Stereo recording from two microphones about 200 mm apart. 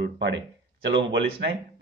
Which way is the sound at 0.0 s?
60° right (ahead or behind).